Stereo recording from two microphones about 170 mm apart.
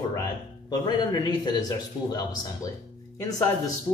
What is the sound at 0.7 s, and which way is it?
A man's voice, 25° left (ahead or behind).